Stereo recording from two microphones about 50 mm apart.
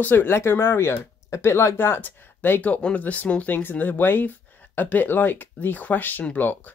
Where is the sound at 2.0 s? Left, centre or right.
Left.